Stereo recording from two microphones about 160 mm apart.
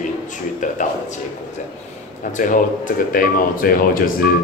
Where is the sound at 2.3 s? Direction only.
55° left (ahead or behind).